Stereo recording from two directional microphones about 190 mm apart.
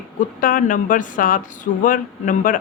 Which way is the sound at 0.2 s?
45° left (ahead or behind).